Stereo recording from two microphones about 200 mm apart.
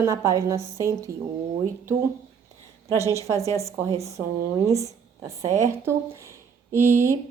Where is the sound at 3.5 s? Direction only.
15° right (ahead or behind).